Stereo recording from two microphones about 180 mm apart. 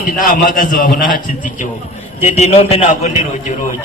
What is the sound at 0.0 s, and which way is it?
A man's voice, 50° left (ahead or behind).